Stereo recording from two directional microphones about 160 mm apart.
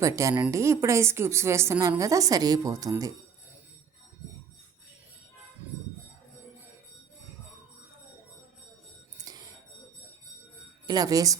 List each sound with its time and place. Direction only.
0.0 s a woman's voice: 20° right (ahead or behind)
9.1 s cutlery: 25° right (ahead or behind)
10.8 s a woman's voice: 25° right (ahead or behind)